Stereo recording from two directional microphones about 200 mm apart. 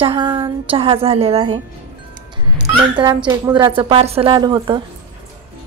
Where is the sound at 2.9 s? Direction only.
25° right (ahead or behind).